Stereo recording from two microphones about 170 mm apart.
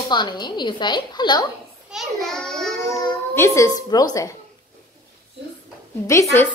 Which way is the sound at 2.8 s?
20° left (ahead or behind).